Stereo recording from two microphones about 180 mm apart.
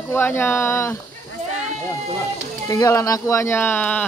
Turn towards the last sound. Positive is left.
turn(degrees=10)  # may be behind; listen again after turning